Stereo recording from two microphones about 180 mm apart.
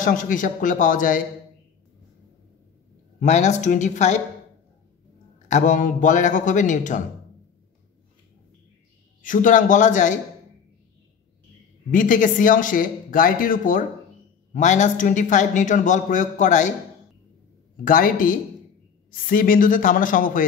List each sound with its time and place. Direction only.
0.0 s a man's voice: 45° left (ahead or behind)
3.2 s a woman's voice: 40° left (ahead or behind)
5.5 s a man's voice: 45° left (ahead or behind)
9.2 s a man's voice: 45° left (ahead or behind)
11.9 s a man's voice: 45° left (ahead or behind)
17.8 s a man's voice: 50° left (ahead or behind)